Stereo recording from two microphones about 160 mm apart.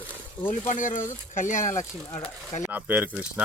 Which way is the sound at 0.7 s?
55° left (ahead or behind).